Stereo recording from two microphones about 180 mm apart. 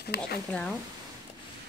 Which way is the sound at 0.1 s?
65° left (ahead or behind).